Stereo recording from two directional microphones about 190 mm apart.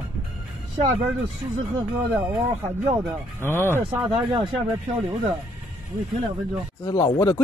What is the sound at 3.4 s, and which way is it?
Speech, 10° left (ahead or behind).